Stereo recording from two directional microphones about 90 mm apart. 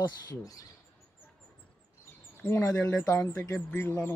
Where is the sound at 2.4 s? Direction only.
20° left (ahead or behind).